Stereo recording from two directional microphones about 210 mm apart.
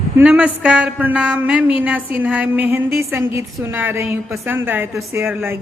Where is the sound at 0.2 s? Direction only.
5° right (ahead or behind).